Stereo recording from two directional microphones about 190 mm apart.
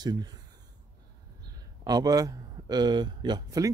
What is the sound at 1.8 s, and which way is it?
Speech, 20° right (ahead or behind).